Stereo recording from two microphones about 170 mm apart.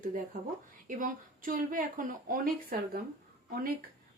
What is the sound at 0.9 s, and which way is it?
Speech, 50° right (ahead or behind).